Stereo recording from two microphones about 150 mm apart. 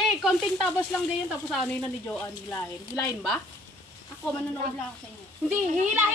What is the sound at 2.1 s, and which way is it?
Speech, 20° left (ahead or behind).